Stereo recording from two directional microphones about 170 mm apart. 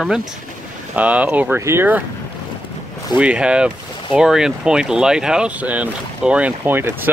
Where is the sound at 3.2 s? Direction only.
5° right (ahead or behind).